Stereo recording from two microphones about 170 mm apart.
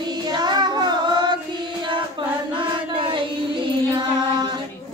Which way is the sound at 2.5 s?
30° right (ahead or behind).